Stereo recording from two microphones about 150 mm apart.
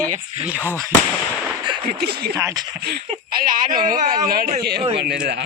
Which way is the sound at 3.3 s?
70° right (ahead or behind).